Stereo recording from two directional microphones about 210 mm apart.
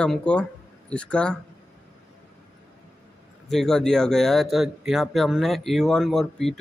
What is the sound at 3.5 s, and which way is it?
Speech, centre (ahead or behind).